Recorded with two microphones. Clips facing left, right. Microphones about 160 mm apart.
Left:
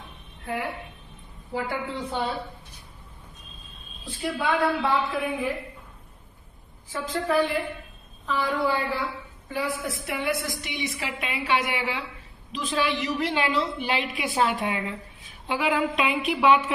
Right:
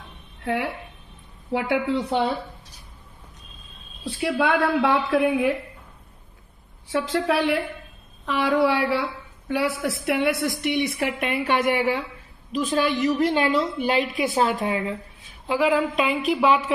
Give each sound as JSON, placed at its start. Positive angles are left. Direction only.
{"t": 0.4, "sound": "a woman's voice", "side_deg": -75}
{"t": 4.0, "sound": "speech", "side_deg": -75}
{"t": 6.9, "sound": "a woman's voice", "side_deg": -75}